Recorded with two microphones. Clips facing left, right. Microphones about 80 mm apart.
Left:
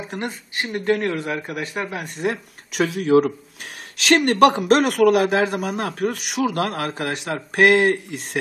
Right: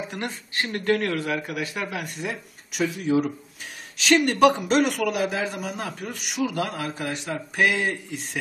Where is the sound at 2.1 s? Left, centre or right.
Left.